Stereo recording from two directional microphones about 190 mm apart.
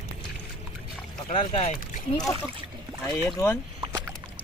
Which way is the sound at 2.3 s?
15° left (ahead or behind).